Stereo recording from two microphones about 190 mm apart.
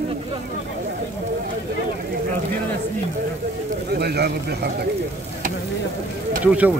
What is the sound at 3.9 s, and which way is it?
Speech, 60° right (ahead or behind).